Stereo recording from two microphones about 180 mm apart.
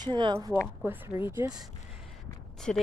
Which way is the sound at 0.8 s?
10° right (ahead or behind).